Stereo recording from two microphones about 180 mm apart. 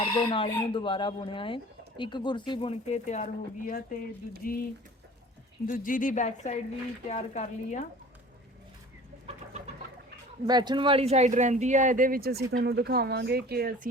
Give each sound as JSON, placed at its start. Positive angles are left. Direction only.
{"t": 0.0, "sound": "speech", "side_deg": 25}
{"t": 3.7, "sound": "speech", "side_deg": 50}
{"t": 5.6, "sound": "speech", "side_deg": 50}
{"t": 9.2, "sound": "chicken", "side_deg": -40}
{"t": 10.4, "sound": "speech", "side_deg": -25}
{"t": 12.5, "sound": "speech", "side_deg": -65}